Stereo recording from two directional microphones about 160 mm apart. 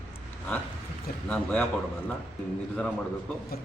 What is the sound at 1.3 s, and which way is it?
Speech, 10° left (ahead or behind).